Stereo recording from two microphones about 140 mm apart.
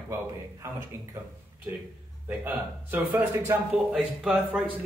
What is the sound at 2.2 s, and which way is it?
A man's voice, 10° right (ahead or behind).